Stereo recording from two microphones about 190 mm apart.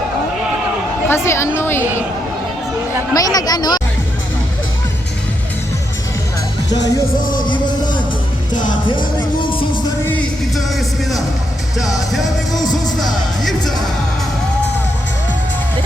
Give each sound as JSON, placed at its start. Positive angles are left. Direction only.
{"t": 1.0, "sound": "a woman's voice", "side_deg": 15}
{"t": 3.2, "sound": "speech", "side_deg": 20}
{"t": 6.7, "sound": "speech", "side_deg": 20}
{"t": 7.2, "sound": "music", "side_deg": 45}
{"t": 7.4, "sound": "music", "side_deg": 25}
{"t": 10.1, "sound": "music", "side_deg": 5}
{"t": 12.5, "sound": "music", "side_deg": 20}
{"t": 13.0, "sound": "music", "side_deg": 0}